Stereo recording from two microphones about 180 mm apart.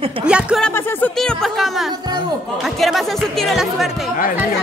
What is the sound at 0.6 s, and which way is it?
Speech, 10° left (ahead or behind).